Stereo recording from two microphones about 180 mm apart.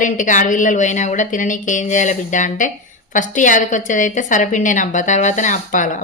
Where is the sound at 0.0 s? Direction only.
45° left (ahead or behind).